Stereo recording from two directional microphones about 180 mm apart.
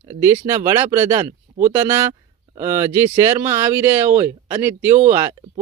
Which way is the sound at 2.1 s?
15° right (ahead or behind).